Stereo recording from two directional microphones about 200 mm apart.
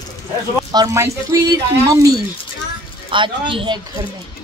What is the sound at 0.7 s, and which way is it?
Speech, 15° right (ahead or behind).